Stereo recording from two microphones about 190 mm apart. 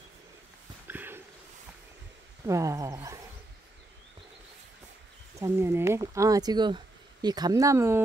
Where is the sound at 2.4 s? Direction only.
15° right (ahead or behind).